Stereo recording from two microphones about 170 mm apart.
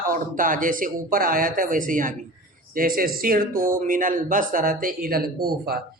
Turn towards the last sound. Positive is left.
turn(degrees=-65)  # may be behind; listen again after turning